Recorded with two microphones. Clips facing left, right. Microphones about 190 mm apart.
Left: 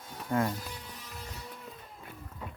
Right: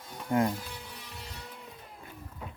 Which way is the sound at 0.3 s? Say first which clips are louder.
Right 3 dB; 20° right (ahead or behind).